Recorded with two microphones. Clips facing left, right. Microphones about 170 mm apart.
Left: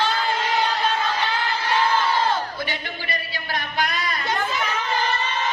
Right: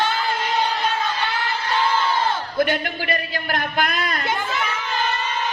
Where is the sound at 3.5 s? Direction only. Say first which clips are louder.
Right 2 dB; 55° right (ahead or behind).